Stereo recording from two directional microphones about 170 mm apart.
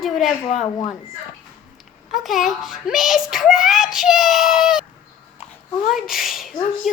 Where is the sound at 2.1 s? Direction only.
Centre (ahead or behind).